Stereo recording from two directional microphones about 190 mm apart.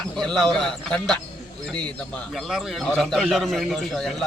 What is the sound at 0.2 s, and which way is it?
A man's voice, centre (ahead or behind).